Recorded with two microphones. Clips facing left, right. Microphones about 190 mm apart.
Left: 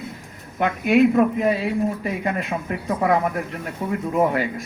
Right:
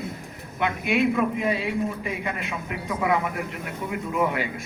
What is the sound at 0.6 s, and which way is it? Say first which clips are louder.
Speech: left 7 dB; 40° left (ahead or behind).